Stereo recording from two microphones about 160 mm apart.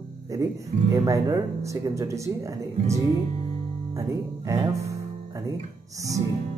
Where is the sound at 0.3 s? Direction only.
20° right (ahead or behind).